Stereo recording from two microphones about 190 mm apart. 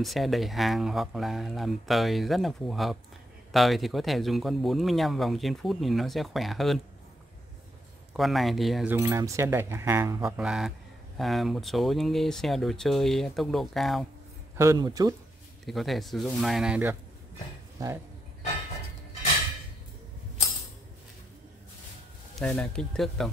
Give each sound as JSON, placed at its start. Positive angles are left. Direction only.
{"t": 0.0, "sound": "speech", "side_deg": 0}
{"t": 8.1, "sound": "speech", "side_deg": 0}
{"t": 8.9, "sound": "speech", "side_deg": -15}
{"t": 14.6, "sound": "speech", "side_deg": -15}
{"t": 15.6, "sound": "speech", "side_deg": 0}
{"t": 22.4, "sound": "speech", "side_deg": 5}